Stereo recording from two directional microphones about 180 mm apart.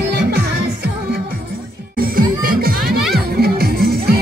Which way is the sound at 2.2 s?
55° right (ahead or behind).